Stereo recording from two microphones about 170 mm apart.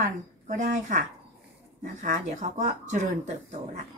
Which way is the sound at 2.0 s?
45° right (ahead or behind).